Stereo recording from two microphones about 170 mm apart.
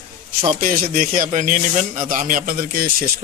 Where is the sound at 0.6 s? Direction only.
55° right (ahead or behind).